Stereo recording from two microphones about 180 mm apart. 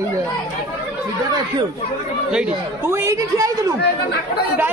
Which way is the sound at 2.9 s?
15° right (ahead or behind).